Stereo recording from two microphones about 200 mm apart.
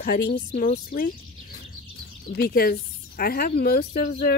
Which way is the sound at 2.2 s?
50° left (ahead or behind).